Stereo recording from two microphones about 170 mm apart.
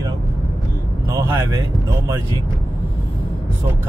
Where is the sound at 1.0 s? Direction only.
20° right (ahead or behind).